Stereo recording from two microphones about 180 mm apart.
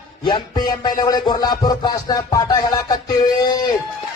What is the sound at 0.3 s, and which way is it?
Music, 25° left (ahead or behind).